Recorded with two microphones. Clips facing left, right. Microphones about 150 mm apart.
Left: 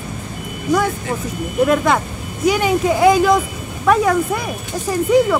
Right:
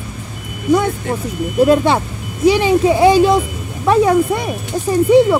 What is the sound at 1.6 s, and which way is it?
Speech, 30° right (ahead or behind).